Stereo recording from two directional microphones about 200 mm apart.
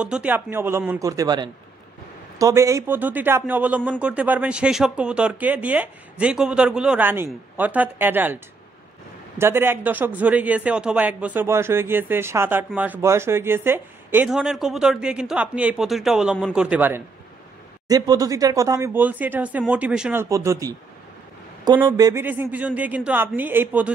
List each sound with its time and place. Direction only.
0.0 s a man's voice: 5° right (ahead or behind)
9.4 s a man's voice: 10° right (ahead or behind)
17.8 s a man's voice: 20° right (ahead or behind)
21.7 s a man's voice: 20° right (ahead or behind)